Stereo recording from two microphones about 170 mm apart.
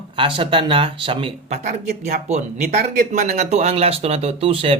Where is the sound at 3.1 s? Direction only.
45° right (ahead or behind).